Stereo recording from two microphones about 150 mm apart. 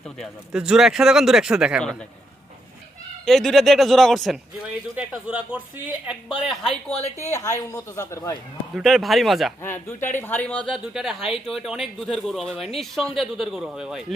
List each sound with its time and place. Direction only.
0.2 s speech: 5° right (ahead or behind)
3.2 s speech: centre (ahead or behind)
4.9 s speech: 10° right (ahead or behind)
6.4 s speech: centre (ahead or behind)
7.3 s a woman's voice: 20° left (ahead or behind)
8.7 s speech: centre (ahead or behind)
9.6 s speech: 15° left (ahead or behind); by 14.0 s 5° right (ahead or behind)